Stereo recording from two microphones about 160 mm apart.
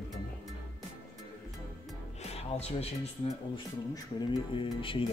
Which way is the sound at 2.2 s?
40° left (ahead or behind).